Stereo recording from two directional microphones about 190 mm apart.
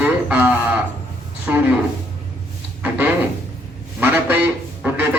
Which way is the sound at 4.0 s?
10° right (ahead or behind).